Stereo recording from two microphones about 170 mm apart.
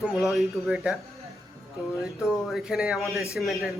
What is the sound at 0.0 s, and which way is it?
Speech, centre (ahead or behind).